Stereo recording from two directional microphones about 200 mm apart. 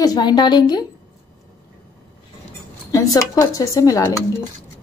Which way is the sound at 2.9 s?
15° left (ahead or behind).